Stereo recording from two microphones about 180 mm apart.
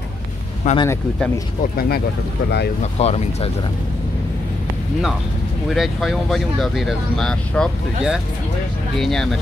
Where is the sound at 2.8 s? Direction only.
35° left (ahead or behind).